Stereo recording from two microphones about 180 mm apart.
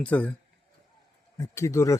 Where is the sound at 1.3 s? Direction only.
15° left (ahead or behind).